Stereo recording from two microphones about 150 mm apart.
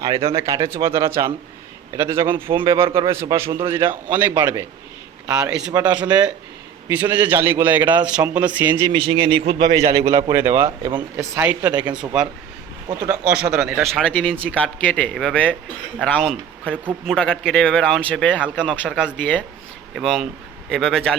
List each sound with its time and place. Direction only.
0.3 s a man's voice: 20° right (ahead or behind)
8.9 s speech: 35° right (ahead or behind)
9.7 s a man's voice: 20° right (ahead or behind)
11.6 s speech: 25° right (ahead or behind)
13.1 s a man's voice: 10° right (ahead or behind); by 18.4 s 10° left (ahead or behind)
18.4 s speech: 5° right (ahead or behind)
19.0 s a man's voice: 10° left (ahead or behind)
20.0 s speech: centre (ahead or behind)